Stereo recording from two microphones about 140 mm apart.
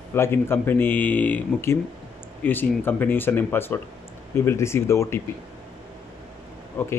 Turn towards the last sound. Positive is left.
turn(degrees=15)  # may be behind; listen again after turning